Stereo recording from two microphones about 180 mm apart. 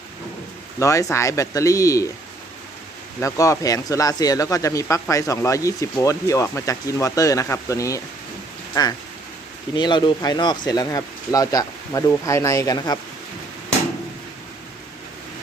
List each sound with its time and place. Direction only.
0.8 s speech: 15° left (ahead or behind)
3.2 s speech: 15° left (ahead or behind)